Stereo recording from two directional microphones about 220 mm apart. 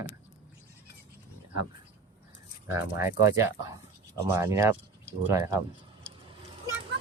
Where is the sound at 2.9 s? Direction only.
15° right (ahead or behind).